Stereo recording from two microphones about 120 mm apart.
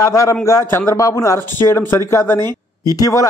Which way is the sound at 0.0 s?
25° left (ahead or behind).